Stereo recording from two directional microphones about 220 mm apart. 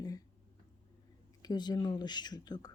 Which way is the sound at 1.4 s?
20° left (ahead or behind).